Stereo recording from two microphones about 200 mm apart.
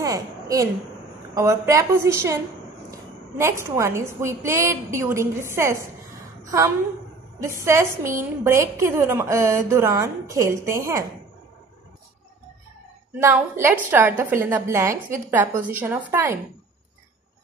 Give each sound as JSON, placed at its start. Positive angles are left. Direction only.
{"t": 0.0, "sound": "a sound", "side_deg": -15}
{"t": 1.3, "sound": "a woman's voice", "side_deg": -15}
{"t": 7.3, "sound": "a woman's voice", "side_deg": -15}
{"t": 13.2, "sound": "a woman's voice", "side_deg": -10}